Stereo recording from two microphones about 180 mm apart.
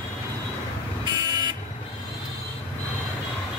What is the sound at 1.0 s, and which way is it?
Buzzer, 25° right (ahead or behind).